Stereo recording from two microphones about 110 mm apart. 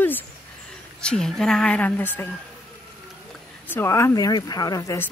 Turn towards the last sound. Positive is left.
turn(degrees=35)  # may be behind; listen again after turning